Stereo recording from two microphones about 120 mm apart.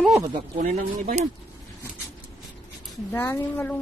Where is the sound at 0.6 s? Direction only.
90° right.